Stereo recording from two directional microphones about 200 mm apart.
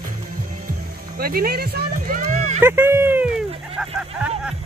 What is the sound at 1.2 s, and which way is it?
Music, 50° right (ahead or behind).